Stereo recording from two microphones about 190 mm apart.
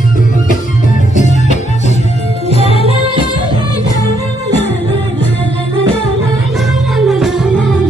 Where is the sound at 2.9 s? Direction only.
30° right (ahead or behind).